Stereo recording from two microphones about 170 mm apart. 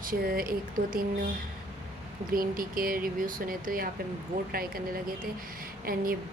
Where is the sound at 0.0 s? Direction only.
55° right (ahead or behind).